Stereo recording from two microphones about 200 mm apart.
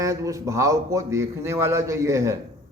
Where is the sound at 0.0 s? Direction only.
15° right (ahead or behind).